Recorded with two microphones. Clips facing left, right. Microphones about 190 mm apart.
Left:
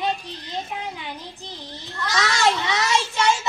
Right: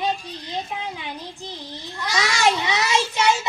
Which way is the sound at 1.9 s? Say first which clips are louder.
Even; 10° right (ahead or behind).